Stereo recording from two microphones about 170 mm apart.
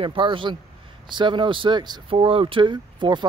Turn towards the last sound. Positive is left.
turn(degrees=-25)  # may be behind; listen again after turning